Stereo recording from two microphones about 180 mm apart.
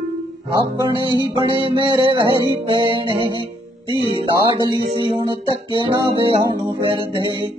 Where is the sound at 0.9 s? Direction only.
25° right (ahead or behind).